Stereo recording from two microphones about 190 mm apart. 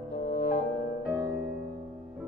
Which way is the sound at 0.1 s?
50° left (ahead or behind).